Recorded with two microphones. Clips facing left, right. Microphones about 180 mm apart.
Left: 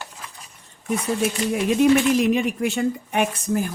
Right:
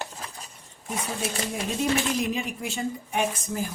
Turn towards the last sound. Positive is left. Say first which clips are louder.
# left 6 dB
turn(degrees=65)  # may be behind; listen again after turning